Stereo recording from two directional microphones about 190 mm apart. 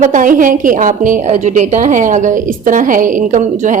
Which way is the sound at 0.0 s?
45° right (ahead or behind).